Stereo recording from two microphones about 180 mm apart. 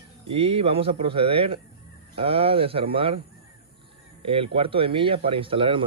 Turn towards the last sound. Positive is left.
turn(degrees=-30)  # may be behind; listen again after turning